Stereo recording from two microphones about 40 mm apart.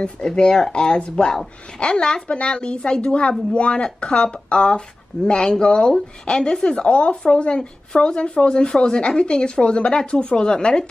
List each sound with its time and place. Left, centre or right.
0.3 s speech: centre